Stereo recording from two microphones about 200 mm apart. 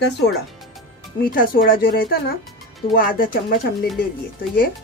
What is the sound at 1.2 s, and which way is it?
Speech, 45° left (ahead or behind).